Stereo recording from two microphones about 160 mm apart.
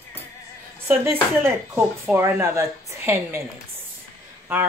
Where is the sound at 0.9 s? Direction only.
15° right (ahead or behind).